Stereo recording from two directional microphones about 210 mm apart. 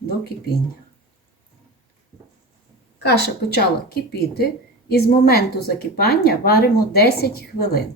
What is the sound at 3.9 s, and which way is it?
Speech, 50° left (ahead or behind).